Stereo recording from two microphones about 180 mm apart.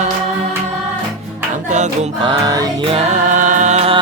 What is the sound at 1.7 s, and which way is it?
Music, 40° right (ahead or behind).